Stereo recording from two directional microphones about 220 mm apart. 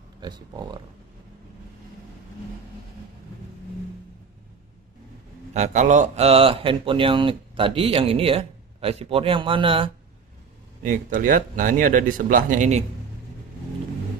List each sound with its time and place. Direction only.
0.2 s speech: 20° right (ahead or behind)
5.5 s speech: 30° right (ahead or behind)
10.8 s speech: 35° right (ahead or behind)